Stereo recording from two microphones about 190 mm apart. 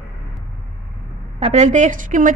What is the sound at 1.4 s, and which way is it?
Speech, 35° right (ahead or behind).